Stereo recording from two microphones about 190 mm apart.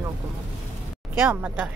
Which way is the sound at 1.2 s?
5° right (ahead or behind).